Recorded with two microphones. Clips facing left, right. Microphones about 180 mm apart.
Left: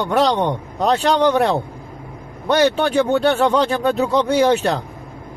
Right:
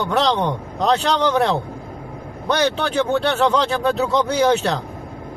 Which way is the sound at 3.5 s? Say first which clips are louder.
Left 2 dB; 10° left (ahead or behind).